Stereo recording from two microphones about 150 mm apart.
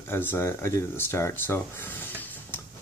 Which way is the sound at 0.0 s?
15° left (ahead or behind).